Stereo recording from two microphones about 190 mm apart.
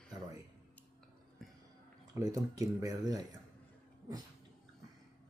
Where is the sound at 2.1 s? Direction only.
20° right (ahead or behind).